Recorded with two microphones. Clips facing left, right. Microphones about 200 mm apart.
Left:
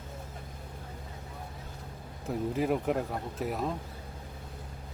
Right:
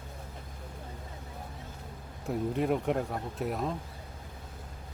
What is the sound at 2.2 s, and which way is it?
Speech, centre (ahead or behind).